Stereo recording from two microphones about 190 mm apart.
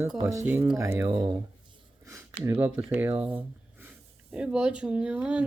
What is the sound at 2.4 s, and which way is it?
Speech, 10° right (ahead or behind).